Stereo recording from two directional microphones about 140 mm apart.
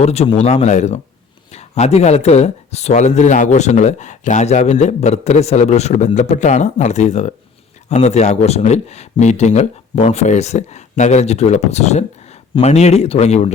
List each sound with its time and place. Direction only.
0.0 s speech: 50° left (ahead or behind)